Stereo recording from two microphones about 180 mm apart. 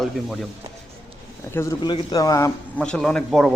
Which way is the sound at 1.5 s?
15° left (ahead or behind).